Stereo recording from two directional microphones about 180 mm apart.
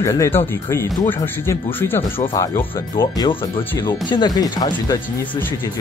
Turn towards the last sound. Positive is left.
turn(degrees=20)  # may be behind; listen again after turning